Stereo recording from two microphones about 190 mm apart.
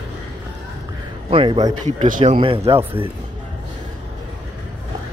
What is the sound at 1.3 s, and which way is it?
Speech, 25° right (ahead or behind).